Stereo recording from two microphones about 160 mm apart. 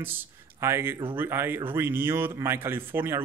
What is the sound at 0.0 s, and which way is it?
A man's voice, 15° right (ahead or behind).